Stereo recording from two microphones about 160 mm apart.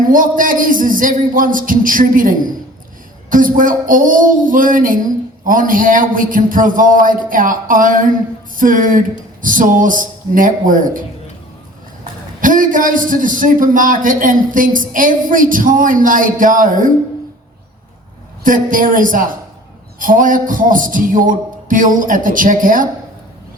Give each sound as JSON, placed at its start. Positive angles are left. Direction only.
{"t": 0.1, "sound": "a man's voice", "side_deg": -60}
{"t": 12.4, "sound": "a man's voice", "side_deg": -55}
{"t": 18.4, "sound": "a man's voice", "side_deg": -55}